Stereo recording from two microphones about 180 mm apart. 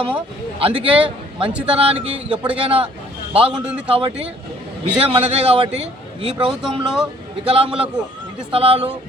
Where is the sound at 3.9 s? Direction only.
30° right (ahead or behind).